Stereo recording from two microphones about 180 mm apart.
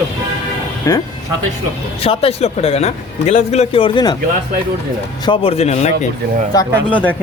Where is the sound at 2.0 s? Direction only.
35° left (ahead or behind).